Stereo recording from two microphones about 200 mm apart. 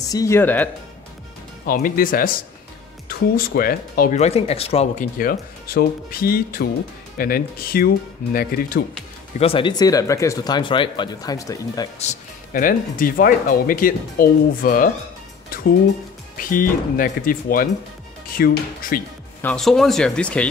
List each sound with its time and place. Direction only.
0.0 s speech: 15° left (ahead or behind)
1.7 s speech: 45° left (ahead or behind)
5.1 s speech: 45° left (ahead or behind)
9.4 s speech: 25° left (ahead or behind)
12.0 s speech: 40° left (ahead or behind)
15.5 s music: 45° left (ahead or behind)
16.3 s speech: 45° left (ahead or behind)
19.4 s speech: centre (ahead or behind)